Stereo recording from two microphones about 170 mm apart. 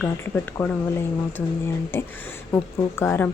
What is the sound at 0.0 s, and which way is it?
Speech, 10° left (ahead or behind).